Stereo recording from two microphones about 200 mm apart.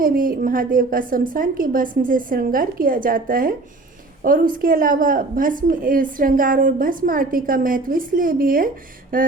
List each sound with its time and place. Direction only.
0.0 s a woman's voice: 45° right (ahead or behind)